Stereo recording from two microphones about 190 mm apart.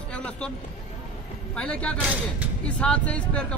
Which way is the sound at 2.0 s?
10° right (ahead or behind).